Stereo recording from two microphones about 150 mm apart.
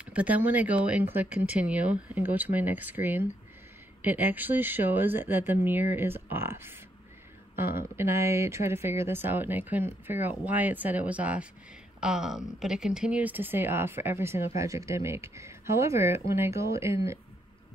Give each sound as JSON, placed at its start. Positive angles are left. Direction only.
{"t": 0.0, "sound": "speech", "side_deg": -10}